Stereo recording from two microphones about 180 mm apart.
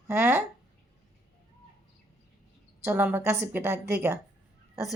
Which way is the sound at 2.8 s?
10° right (ahead or behind).